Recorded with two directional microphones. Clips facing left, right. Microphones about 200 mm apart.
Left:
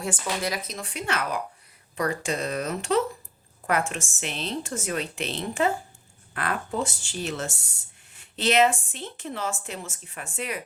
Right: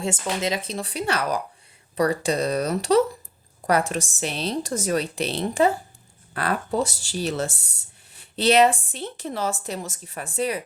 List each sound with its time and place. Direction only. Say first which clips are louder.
0.0 s a woman's voice: right 3 dB; 25° right (ahead or behind)